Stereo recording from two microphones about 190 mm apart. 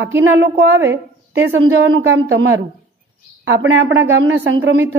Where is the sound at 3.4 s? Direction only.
85° right.